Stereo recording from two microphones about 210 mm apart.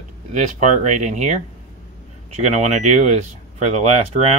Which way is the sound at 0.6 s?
35° right (ahead or behind).